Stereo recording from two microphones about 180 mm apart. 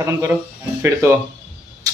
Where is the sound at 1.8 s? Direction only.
20° right (ahead or behind).